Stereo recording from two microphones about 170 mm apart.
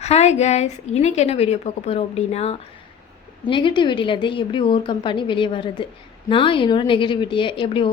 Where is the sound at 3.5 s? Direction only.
30° left (ahead or behind).